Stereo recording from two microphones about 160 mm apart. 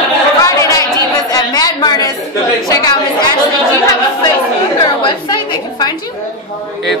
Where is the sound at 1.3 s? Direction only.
20° left (ahead or behind).